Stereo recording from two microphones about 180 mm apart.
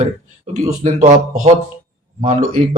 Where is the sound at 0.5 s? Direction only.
40° right (ahead or behind).